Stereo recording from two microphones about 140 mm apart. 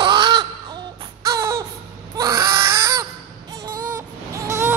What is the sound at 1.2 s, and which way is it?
Music, 25° right (ahead or behind).